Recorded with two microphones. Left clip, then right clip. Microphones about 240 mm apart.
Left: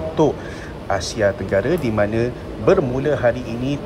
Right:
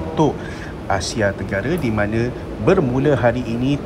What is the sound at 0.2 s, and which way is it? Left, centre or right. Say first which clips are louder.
A man's voice: left 1 dB; centre.